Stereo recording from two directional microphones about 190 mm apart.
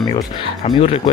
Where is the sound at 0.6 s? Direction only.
35° left (ahead or behind).